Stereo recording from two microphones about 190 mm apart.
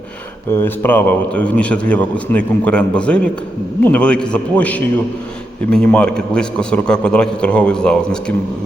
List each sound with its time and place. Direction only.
0.5 s a man's voice: 10° left (ahead or behind)